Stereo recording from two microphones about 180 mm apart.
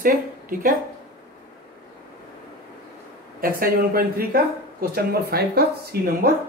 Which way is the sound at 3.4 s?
55° right (ahead or behind).